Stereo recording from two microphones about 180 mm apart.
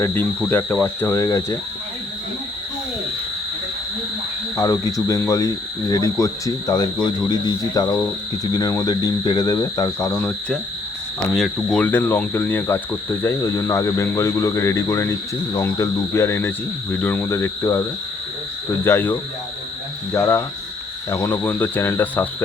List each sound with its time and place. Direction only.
0.0 s cricket: 10° left (ahead or behind)
4.5 s speech: 20° left (ahead or behind)
10.1 s cricket: 10° left (ahead or behind)
18.9 s cricket: 10° left (ahead or behind)